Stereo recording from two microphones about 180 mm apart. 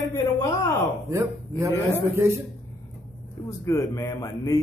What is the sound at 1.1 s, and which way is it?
A man's voice, 15° right (ahead or behind).